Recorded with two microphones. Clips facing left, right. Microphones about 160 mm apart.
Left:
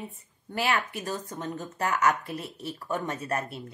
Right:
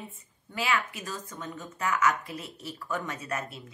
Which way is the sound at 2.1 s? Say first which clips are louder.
Left 3 dB; 60° left (ahead or behind).